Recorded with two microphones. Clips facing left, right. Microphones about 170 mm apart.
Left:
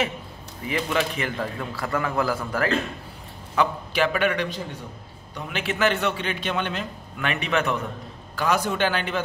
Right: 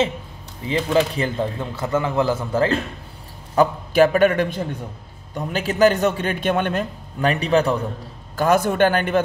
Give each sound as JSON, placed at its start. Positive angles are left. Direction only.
{"t": 0.7, "sound": "speech", "side_deg": -30}
{"t": 3.5, "sound": "a man's voice", "side_deg": -45}
{"t": 8.4, "sound": "a man's voice", "side_deg": -50}